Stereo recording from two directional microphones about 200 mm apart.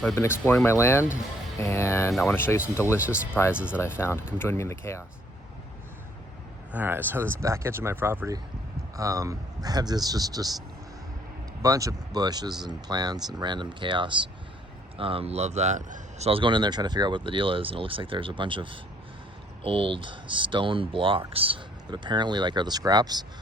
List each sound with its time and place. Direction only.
0.2 s speech: 10° left (ahead or behind)
3.5 s speech: 5° right (ahead or behind)
3.8 s speech: 10° left (ahead or behind)
6.7 s speech: 10° right (ahead or behind)
11.6 s speech: 15° right (ahead or behind)